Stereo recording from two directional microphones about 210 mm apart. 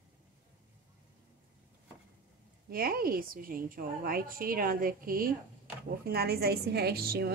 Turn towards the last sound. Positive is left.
turn(degrees=-45)  # may be behind; listen again after turning